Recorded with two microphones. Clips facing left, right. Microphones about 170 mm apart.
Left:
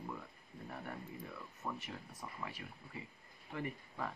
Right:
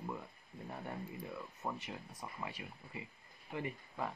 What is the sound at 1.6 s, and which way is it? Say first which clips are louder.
Speech: right 1 dB; 20° right (ahead or behind).